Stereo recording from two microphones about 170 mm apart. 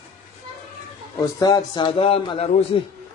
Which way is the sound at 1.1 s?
20° left (ahead or behind).